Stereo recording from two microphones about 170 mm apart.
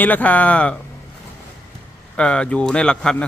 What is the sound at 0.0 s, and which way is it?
Speech, 10° left (ahead or behind).